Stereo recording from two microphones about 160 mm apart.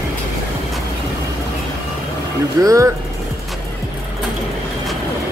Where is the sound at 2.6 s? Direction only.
20° right (ahead or behind).